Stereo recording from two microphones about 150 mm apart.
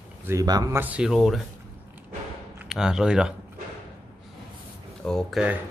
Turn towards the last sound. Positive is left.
turn(degrees=0)  # may be behind; listen again after turning